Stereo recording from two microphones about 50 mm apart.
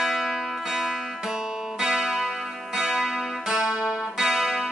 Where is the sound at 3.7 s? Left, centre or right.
Right.